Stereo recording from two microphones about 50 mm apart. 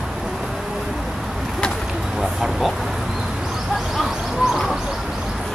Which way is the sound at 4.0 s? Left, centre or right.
Centre.